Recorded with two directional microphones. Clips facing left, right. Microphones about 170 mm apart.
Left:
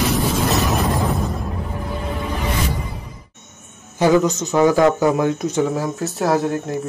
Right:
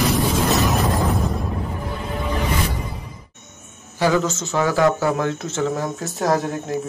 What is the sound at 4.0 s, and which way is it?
Speech, 20° left (ahead or behind).